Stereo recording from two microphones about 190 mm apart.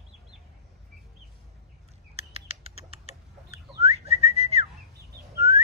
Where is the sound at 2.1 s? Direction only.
30° right (ahead or behind).